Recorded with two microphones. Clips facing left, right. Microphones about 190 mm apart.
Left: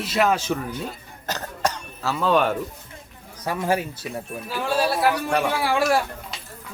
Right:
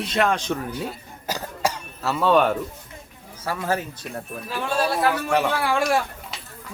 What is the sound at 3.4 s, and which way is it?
A man's voice, 15° left (ahead or behind).